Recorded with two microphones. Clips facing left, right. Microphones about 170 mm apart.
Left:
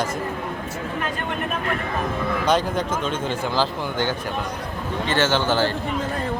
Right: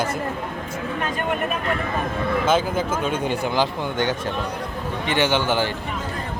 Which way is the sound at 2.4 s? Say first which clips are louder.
Left 1 dB; 5° right (ahead or behind).